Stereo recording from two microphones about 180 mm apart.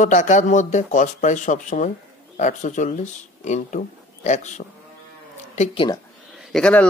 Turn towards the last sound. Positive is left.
turn(degrees=5)  # may be behind; listen again after turning